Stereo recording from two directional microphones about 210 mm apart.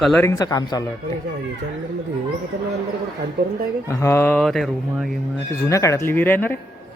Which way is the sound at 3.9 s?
10° left (ahead or behind).